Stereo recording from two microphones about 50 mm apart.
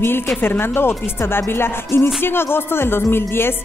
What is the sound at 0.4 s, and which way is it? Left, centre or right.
Music, left.